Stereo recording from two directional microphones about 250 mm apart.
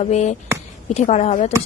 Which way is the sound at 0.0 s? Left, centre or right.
Left.